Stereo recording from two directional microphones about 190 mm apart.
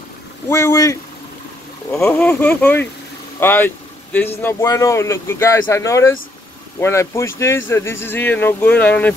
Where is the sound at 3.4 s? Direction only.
10° left (ahead or behind).